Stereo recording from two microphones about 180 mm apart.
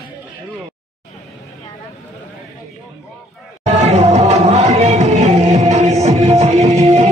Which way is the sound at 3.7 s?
35° right (ahead or behind).